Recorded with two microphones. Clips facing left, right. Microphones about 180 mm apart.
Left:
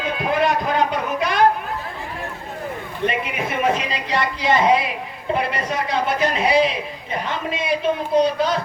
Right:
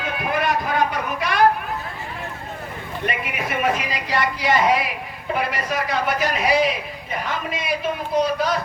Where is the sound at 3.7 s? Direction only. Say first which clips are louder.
Left 1 dB; 25° left (ahead or behind).